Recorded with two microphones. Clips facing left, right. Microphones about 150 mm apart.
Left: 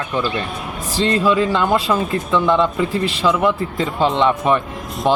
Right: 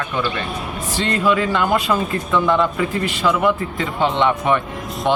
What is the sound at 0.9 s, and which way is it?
Speech, 30° left (ahead or behind).